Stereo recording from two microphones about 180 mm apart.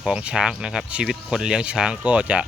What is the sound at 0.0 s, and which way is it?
Speech, 5° right (ahead or behind).